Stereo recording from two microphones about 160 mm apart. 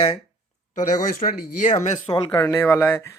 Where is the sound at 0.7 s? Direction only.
55° left (ahead or behind).